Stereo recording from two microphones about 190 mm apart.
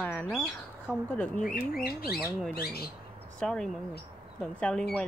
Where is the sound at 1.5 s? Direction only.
50° left (ahead or behind).